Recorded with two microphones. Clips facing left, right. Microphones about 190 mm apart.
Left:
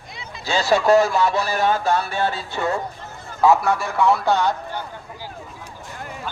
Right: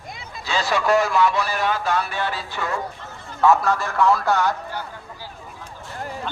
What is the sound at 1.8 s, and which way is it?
Music, 30° left (ahead or behind).